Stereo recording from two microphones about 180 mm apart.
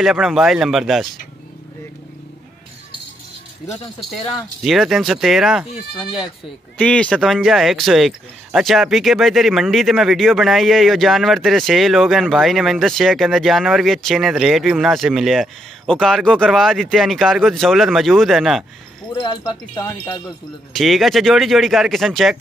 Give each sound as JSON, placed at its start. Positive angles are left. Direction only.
{"t": 0.0, "sound": "speech", "side_deg": 0}
{"t": 3.6, "sound": "speech", "side_deg": 0}
{"t": 19.8, "sound": "wind chime", "side_deg": 25}
{"t": 20.7, "sound": "speech", "side_deg": 0}